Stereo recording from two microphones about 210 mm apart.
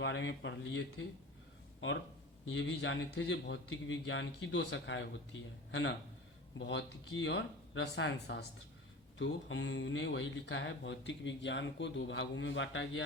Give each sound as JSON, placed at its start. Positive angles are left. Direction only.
{"t": 0.0, "sound": "a man's voice", "side_deg": 60}